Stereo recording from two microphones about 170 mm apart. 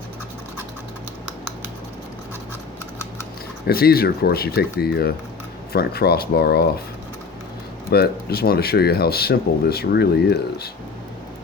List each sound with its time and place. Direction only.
3.7 s speech: 65° left (ahead or behind)
7.9 s speech: 65° left (ahead or behind)